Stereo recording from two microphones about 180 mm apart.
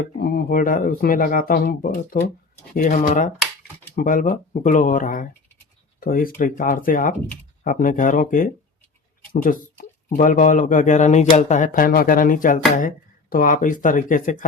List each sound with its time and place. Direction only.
0.2 s speech: 60° left (ahead or behind)